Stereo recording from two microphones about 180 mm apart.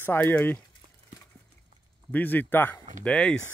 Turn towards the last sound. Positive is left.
turn(degrees=5)  # may be behind; listen again after turning